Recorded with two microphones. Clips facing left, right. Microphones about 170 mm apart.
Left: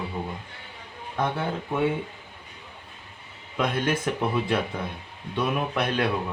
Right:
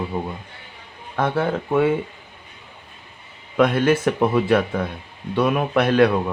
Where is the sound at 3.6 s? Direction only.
75° right (ahead or behind).